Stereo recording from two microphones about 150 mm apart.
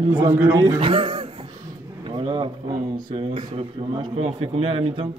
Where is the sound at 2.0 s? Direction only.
35° right (ahead or behind).